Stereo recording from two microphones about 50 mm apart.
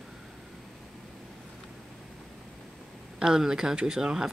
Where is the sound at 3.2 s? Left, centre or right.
Centre.